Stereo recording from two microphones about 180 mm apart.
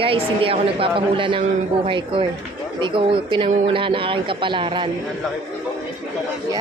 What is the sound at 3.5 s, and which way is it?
Speech, 40° right (ahead or behind).